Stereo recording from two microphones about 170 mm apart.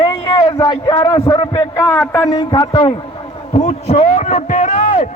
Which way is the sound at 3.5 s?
40° left (ahead or behind).